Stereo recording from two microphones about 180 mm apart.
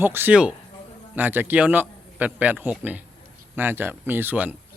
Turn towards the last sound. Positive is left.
turn(degrees=-10)  # may be behind; listen again after turning